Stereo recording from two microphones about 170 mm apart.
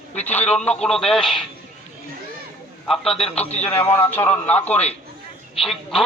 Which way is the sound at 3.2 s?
40° left (ahead or behind).